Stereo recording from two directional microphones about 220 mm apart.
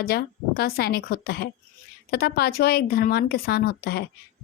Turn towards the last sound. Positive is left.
turn(degrees=45)  # may be behind; listen again after turning